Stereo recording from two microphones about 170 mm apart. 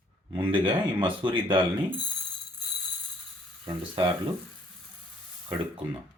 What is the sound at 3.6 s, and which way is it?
Speech, 25° right (ahead or behind).